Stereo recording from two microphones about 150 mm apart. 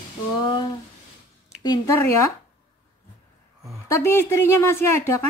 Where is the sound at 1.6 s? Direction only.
20° left (ahead or behind).